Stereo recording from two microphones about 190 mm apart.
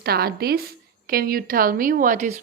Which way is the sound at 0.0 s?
55° right (ahead or behind).